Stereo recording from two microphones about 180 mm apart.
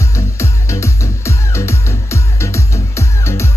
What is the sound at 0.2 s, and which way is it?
Music, 15° left (ahead or behind).